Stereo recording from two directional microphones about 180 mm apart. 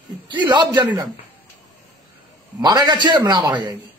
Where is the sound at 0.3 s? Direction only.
25° right (ahead or behind).